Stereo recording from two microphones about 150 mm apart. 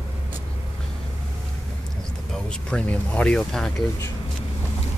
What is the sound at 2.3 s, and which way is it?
Speech, 5° left (ahead or behind).